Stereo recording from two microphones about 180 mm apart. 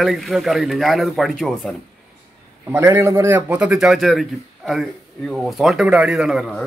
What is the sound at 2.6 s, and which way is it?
A man's voice, 15° right (ahead or behind).